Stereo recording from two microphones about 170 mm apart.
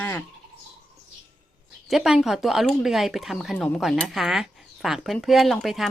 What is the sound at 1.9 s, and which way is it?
Speech, 5° right (ahead or behind).